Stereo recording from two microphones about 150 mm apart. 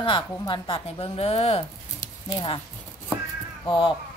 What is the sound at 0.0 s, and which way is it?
A woman's voice, 35° left (ahead or behind).